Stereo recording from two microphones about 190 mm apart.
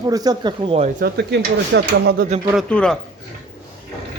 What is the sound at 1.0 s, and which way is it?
Speech, 60° right (ahead or behind).